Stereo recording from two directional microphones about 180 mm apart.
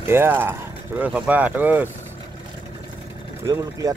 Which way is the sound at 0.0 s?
15° right (ahead or behind).